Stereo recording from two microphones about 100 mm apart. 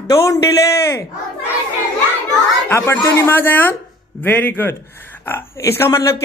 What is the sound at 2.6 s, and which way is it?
Speech, 25° left (ahead or behind).